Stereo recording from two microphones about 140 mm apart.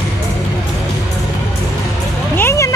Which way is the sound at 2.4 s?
20° left (ahead or behind).